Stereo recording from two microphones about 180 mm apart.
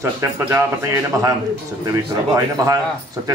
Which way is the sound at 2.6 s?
20° right (ahead or behind).